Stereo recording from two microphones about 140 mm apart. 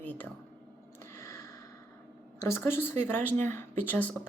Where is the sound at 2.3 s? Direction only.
20° left (ahead or behind).